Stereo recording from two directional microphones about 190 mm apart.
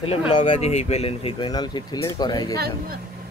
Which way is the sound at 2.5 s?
55° right (ahead or behind).